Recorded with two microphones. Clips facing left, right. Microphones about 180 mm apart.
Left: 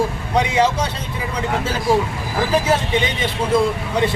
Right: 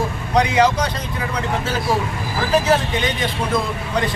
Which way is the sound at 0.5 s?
30° left (ahead or behind).